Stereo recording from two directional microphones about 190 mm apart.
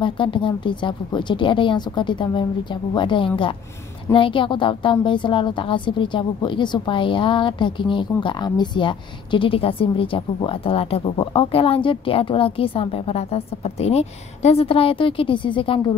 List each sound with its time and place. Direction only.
0.0 s speech: 25° left (ahead or behind)